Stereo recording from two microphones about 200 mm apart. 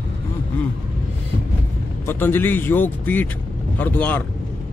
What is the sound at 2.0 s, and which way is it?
Speech, 10° left (ahead or behind).